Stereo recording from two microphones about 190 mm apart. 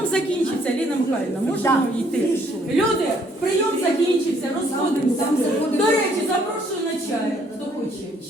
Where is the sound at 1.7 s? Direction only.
15° left (ahead or behind).